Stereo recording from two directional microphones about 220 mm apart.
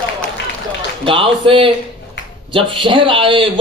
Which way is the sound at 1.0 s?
25° right (ahead or behind).